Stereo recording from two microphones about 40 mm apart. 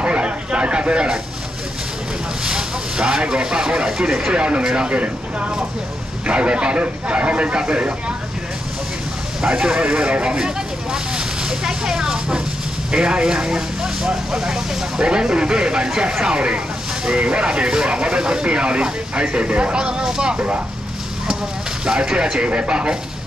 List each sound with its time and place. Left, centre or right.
0.0 s a sound: right
2.4 s speech: centre
9.4 s speech: centre
10.2 s vehicle: centre
12.9 s speech: right
20.3 s speech: right
21.8 s speech: right